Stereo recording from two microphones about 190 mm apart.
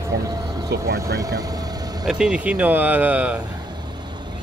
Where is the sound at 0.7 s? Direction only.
60° right (ahead or behind).